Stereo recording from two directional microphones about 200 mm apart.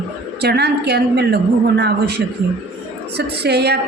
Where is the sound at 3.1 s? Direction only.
55° right (ahead or behind).